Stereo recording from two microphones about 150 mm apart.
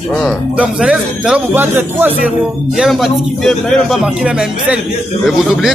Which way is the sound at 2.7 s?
Centre (ahead or behind).